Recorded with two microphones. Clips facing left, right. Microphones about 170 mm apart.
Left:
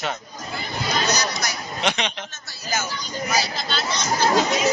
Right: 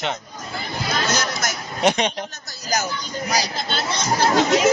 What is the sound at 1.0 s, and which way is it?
Chatter, 50° right (ahead or behind).